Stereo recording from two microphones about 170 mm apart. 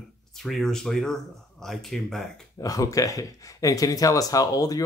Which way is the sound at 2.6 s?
20° left (ahead or behind).